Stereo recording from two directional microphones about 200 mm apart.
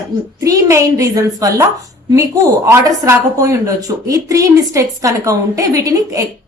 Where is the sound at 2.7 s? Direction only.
15° right (ahead or behind).